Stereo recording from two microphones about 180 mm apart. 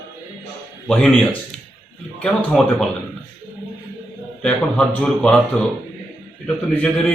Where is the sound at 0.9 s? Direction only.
5° left (ahead or behind).